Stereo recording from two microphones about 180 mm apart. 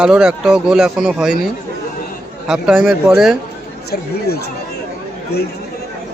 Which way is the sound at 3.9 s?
65° left (ahead or behind).